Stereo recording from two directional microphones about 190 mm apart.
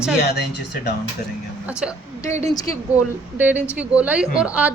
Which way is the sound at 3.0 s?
10° right (ahead or behind).